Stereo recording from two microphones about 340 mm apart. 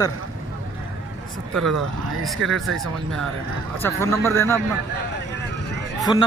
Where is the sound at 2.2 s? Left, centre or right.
Centre.